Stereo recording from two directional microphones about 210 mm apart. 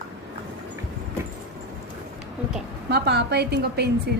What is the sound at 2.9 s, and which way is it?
A woman's voice, 50° right (ahead or behind).